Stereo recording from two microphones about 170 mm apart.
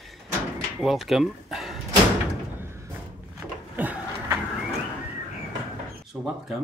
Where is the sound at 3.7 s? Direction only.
10° right (ahead or behind).